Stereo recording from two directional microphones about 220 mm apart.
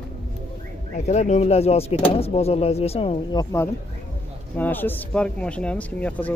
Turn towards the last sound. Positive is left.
turn(degrees=5)  # may be behind; listen again after turning